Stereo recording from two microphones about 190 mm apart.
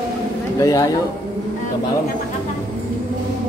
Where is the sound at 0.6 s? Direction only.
15° left (ahead or behind).